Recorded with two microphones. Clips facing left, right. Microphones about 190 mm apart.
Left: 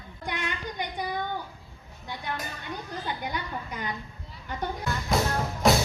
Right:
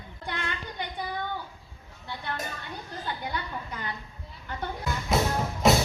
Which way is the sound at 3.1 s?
15° left (ahead or behind).